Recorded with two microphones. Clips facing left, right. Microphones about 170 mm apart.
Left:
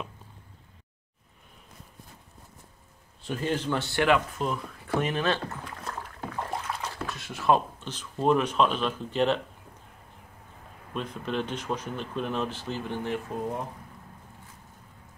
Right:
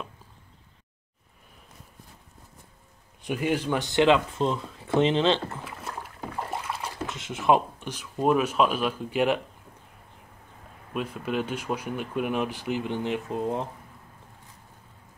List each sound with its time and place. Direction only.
3.2 s speech: 15° right (ahead or behind)
5.6 s rowboat: 5° right (ahead or behind)
6.5 s a sound: 10° right (ahead or behind)
7.1 s speech: 20° right (ahead or behind)
10.9 s speech: 10° right (ahead or behind)